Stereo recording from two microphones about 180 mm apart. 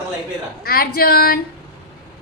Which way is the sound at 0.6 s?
55° left (ahead or behind).